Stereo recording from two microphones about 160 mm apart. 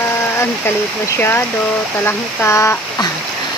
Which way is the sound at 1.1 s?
15° left (ahead or behind).